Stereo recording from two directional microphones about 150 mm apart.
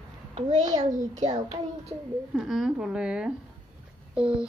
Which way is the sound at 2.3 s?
Centre (ahead or behind).